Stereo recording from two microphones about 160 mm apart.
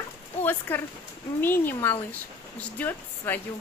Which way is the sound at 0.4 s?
10° left (ahead or behind).